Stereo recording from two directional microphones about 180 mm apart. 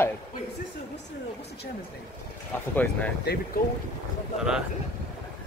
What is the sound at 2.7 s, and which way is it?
Speech, 10° left (ahead or behind).